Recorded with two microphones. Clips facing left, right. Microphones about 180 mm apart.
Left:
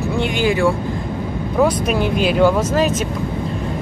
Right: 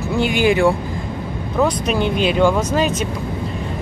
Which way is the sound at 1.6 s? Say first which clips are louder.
Left 1 dB; 5° left (ahead or behind).